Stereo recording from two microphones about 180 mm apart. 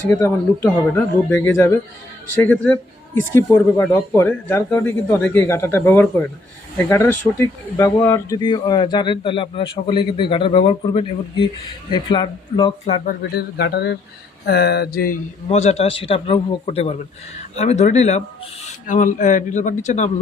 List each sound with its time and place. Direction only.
0.1 s speech: 15° left (ahead or behind); by 13.0 s 30° left (ahead or behind)
13.1 s speech: 65° left (ahead or behind)
15.4 s a man's voice: 35° left (ahead or behind)